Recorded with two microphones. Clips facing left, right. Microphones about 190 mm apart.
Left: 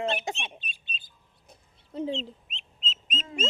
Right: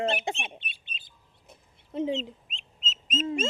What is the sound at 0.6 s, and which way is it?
Bird, 70° right (ahead or behind).